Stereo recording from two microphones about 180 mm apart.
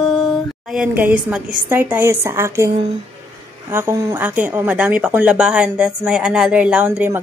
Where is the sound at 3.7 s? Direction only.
15° right (ahead or behind).